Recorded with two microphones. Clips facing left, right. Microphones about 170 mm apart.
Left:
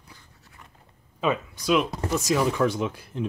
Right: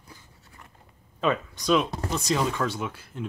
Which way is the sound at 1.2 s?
5° left (ahead or behind).